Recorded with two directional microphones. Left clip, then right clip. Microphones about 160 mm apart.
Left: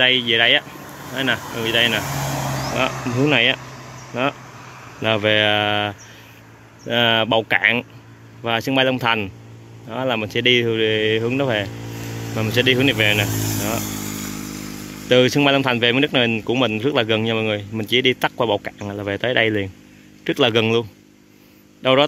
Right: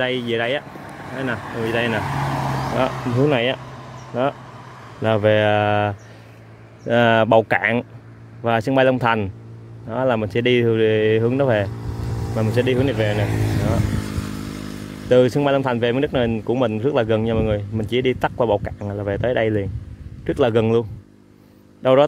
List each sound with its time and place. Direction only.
0.0 s speech: centre (ahead or behind)
0.8 s vehicle: 35° left (ahead or behind)
1.1 s speech: 5° left (ahead or behind)
1.4 s speech: 35° left (ahead or behind)
1.7 s speech: 5° right (ahead or behind)
4.1 s speech: centre (ahead or behind)
11.8 s vehicle: 40° left (ahead or behind)
12.4 s speech: centre (ahead or behind)
13.3 s speech: 50° left (ahead or behind)
13.7 s speech: 25° left (ahead or behind); by 20.8 s centre (ahead or behind)